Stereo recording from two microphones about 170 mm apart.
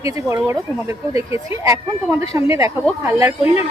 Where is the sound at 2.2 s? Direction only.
20° right (ahead or behind).